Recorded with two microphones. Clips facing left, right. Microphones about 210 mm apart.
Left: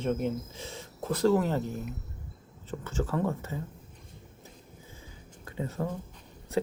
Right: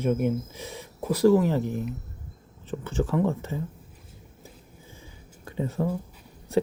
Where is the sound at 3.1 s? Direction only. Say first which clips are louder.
Right 5 dB; 20° right (ahead or behind).